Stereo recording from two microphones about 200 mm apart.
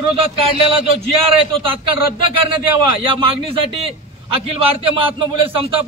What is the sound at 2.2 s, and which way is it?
A man's voice, 25° right (ahead or behind).